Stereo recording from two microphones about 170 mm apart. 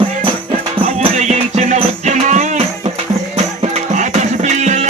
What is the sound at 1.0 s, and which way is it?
Music, 40° right (ahead or behind).